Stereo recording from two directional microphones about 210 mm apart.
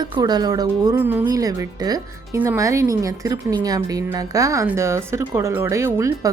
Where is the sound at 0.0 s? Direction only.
20° right (ahead or behind).